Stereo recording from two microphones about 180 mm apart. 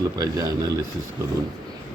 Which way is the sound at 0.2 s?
20° right (ahead or behind).